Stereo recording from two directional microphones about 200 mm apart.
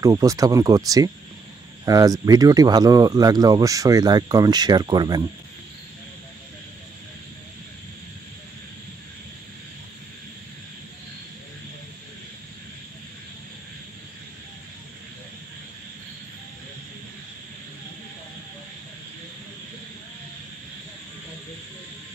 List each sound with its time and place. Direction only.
0.0 s speech: 15° right (ahead or behind)